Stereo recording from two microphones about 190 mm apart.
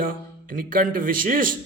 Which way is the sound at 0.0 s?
45° right (ahead or behind).